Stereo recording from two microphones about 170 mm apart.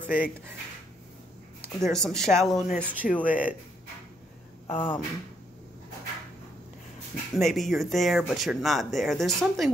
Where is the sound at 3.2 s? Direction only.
10° right (ahead or behind).